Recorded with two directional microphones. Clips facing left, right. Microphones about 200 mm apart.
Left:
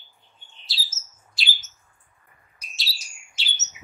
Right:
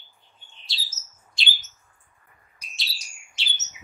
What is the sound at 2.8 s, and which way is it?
Bird, centre (ahead or behind).